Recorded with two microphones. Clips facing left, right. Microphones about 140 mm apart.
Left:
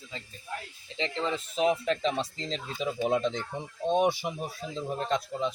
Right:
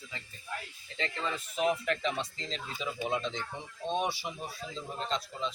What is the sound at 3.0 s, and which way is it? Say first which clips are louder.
A man's voice: left 6 dB; 50° left (ahead or behind).